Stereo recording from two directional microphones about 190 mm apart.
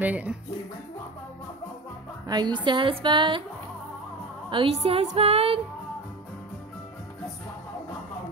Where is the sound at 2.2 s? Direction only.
20° right (ahead or behind).